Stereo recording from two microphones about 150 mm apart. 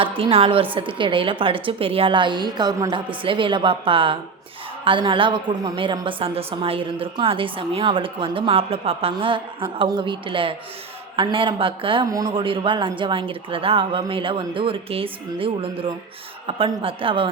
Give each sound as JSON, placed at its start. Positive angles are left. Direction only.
{"t": 0.0, "sound": "a woman's voice", "side_deg": -40}